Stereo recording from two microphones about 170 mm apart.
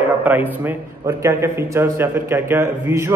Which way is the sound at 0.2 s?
10° right (ahead or behind).